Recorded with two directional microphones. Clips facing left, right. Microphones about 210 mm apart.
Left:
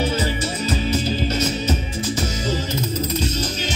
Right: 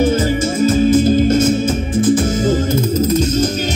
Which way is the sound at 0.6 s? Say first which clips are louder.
Right 13 dB; 50° right (ahead or behind).